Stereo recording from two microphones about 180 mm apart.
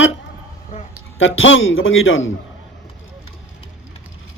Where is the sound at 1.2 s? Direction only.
90° left.